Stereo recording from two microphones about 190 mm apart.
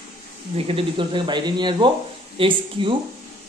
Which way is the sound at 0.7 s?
25° right (ahead or behind).